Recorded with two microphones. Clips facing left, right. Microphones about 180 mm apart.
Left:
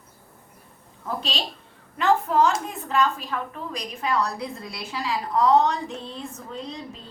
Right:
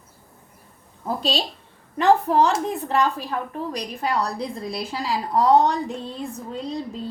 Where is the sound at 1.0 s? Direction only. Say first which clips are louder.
Right 5 dB; 35° right (ahead or behind).